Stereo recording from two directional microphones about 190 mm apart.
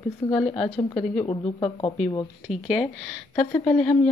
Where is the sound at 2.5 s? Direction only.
Centre (ahead or behind).